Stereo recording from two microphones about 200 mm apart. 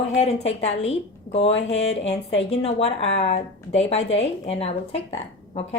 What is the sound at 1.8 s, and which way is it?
Speech, 65° left (ahead or behind).